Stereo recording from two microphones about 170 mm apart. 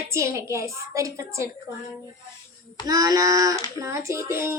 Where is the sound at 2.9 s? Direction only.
20° right (ahead or behind).